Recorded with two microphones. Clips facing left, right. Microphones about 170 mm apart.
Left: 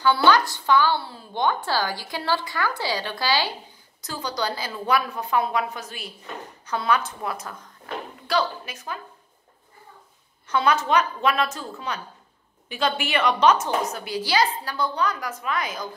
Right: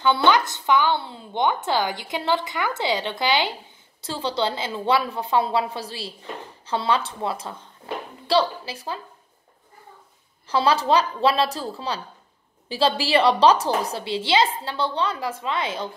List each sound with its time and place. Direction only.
0.0 s a woman's voice: 20° right (ahead or behind)
10.4 s a woman's voice: 30° right (ahead or behind)